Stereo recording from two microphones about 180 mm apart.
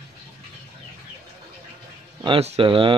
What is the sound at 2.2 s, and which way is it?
Speech, 30° right (ahead or behind).